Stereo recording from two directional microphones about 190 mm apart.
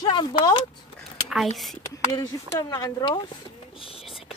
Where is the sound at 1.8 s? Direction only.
20° left (ahead or behind).